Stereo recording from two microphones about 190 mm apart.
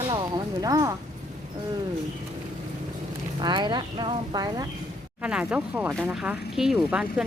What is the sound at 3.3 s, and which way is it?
Speech, 25° right (ahead or behind).